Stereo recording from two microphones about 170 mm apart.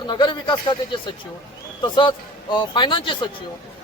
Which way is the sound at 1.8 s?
25° left (ahead or behind).